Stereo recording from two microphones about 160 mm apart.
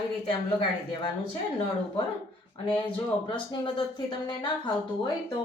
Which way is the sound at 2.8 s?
30° left (ahead or behind).